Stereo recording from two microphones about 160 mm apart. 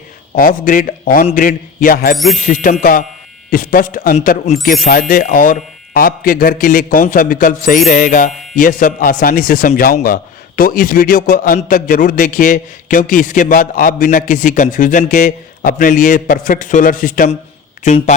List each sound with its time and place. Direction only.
0.3 s a man's voice: 60° left (ahead or behind)
7.6 s music: 60° left (ahead or behind)
8.5 s a man's voice: 55° left (ahead or behind)
17.8 s music: 50° left (ahead or behind)